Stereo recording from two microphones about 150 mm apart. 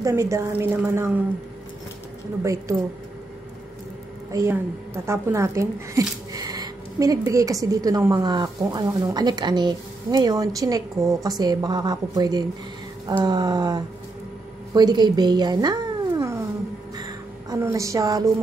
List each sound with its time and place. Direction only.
0.0 s a woman's voice: 20° right (ahead or behind)
4.3 s a woman's voice: 20° right (ahead or behind)
16.9 s music: 25° right (ahead or behind)